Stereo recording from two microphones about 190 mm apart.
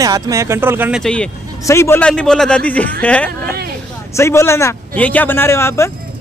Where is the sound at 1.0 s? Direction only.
5° left (ahead or behind).